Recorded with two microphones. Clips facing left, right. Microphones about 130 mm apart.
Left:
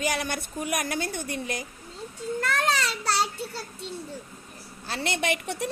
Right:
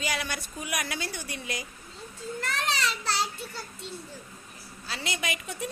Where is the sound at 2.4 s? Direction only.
40° left (ahead or behind).